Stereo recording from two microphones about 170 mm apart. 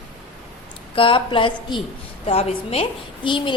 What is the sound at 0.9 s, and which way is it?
A woman's voice, 30° left (ahead or behind).